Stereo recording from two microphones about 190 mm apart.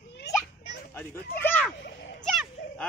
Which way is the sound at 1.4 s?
10° left (ahead or behind).